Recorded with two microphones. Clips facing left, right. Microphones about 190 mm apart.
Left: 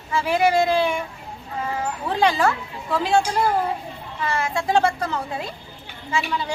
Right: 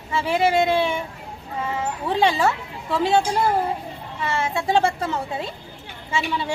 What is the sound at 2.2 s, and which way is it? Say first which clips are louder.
Speech: left 1 dB; 25° right (ahead or behind).